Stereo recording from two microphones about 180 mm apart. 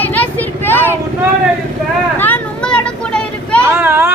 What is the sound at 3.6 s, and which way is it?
Speech, 15° right (ahead or behind).